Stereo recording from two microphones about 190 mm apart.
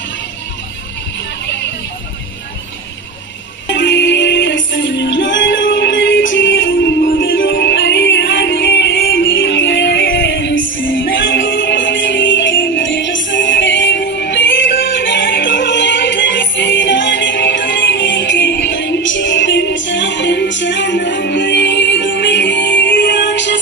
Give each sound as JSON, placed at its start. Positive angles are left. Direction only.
{"t": 3.6, "sound": "music", "side_deg": 70}
{"t": 11.1, "sound": "music", "side_deg": 70}